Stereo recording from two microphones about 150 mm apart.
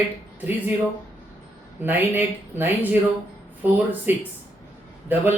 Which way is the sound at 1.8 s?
10° right (ahead or behind).